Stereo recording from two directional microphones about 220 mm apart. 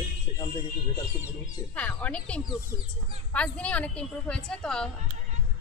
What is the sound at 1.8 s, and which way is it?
A woman's voice, 5° left (ahead or behind).